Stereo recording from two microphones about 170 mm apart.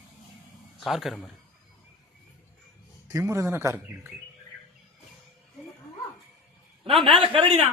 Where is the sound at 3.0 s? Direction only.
15° right (ahead or behind).